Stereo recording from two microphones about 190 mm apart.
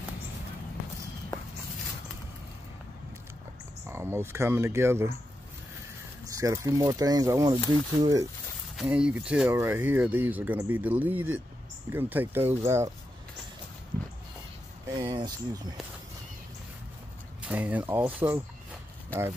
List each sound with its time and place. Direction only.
3.8 s speech: 15° right (ahead or behind)
6.2 s speech: 15° right (ahead or behind)
8.7 s speech: 5° right (ahead or behind)
14.9 s speech: 25° right (ahead or behind)
17.5 s speech: 10° right (ahead or behind)